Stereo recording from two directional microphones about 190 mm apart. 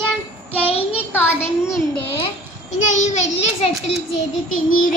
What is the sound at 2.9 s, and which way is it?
Speech, 35° left (ahead or behind).